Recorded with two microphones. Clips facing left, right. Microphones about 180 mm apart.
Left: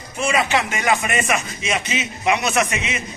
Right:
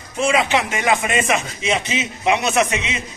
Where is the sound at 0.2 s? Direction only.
20° right (ahead or behind).